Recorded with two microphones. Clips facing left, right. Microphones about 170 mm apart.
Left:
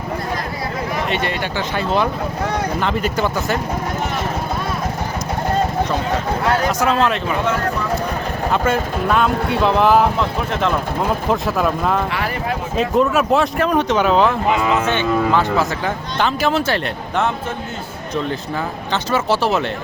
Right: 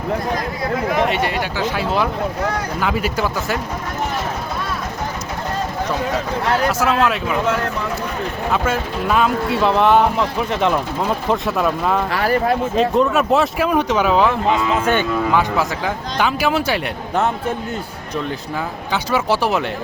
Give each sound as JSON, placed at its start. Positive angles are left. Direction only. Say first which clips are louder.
{"t": 1.1, "sound": "speech", "louder": "right 1 dB", "side_deg": -5}
{"t": 6.7, "sound": "speech", "louder": "even", "side_deg": -5}
{"t": 8.5, "sound": "speech", "louder": "left 2 dB", "side_deg": -5}
{"t": 11.3, "sound": "speech", "louder": "right 1 dB", "side_deg": 0}
{"t": 12.1, "sound": "speech", "louder": "right 5 dB", "side_deg": -40}
{"t": 12.7, "sound": "speech", "louder": "left 2 dB", "side_deg": 0}
{"t": 16.1, "sound": "speech", "louder": "even", "side_deg": -10}
{"t": 19.1, "sound": "speech", "louder": "even", "side_deg": -15}